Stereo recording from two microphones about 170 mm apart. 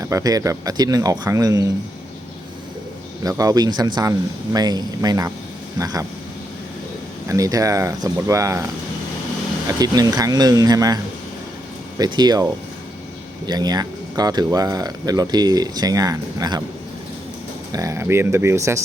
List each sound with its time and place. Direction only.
0.0 s speech: 20° right (ahead or behind)
3.2 s speech: 20° right (ahead or behind)
7.3 s speech: 20° right (ahead or behind)
9.6 s speech: 20° right (ahead or behind)
13.5 s speech: 25° right (ahead or behind)
17.7 s speech: 20° right (ahead or behind)